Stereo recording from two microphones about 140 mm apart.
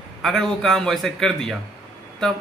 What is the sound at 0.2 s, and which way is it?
A man's voice, centre (ahead or behind).